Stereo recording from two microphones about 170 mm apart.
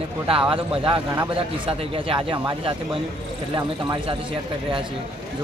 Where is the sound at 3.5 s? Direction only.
30° right (ahead or behind).